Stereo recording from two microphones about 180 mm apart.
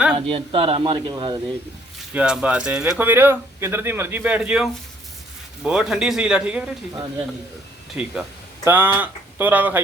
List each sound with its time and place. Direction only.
0.2 s speech: 30° right (ahead or behind)
2.1 s speech: 5° right (ahead or behind)
8.0 s speech: 5° right (ahead or behind)